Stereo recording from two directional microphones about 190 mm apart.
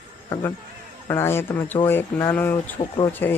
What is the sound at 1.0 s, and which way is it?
Speech, 15° left (ahead or behind).